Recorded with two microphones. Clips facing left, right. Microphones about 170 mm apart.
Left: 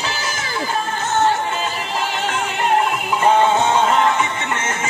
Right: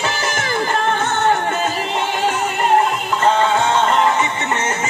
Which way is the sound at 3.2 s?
15° left (ahead or behind).